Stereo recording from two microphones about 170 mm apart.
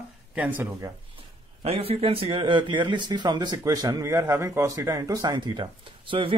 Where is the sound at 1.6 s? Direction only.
35° right (ahead or behind).